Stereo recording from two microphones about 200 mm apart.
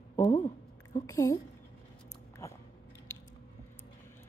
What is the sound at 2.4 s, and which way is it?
Chewing, 15° left (ahead or behind).